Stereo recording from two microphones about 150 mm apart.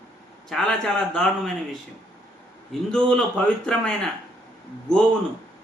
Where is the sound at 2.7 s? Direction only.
5° left (ahead or behind).